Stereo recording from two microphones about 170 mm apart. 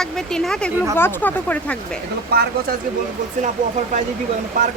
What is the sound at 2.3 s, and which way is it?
Speech, 70° right (ahead or behind).